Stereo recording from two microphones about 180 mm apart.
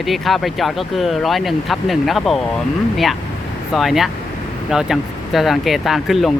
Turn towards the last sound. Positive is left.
turn(degrees=0)  # may be behind; listen again after turning